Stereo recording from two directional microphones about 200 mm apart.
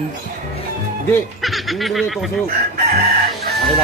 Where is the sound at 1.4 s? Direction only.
Centre (ahead or behind).